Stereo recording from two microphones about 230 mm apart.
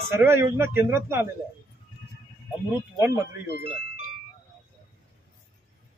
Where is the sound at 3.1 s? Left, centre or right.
Left.